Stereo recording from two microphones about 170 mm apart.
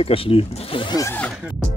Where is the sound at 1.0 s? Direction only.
10° left (ahead or behind).